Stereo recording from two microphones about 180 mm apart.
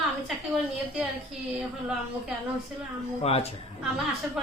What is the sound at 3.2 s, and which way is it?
Speech, 35° left (ahead or behind).